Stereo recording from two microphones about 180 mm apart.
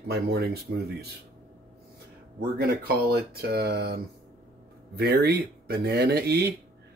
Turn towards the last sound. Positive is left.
turn(degrees=-60)  # may be behind; listen again after turning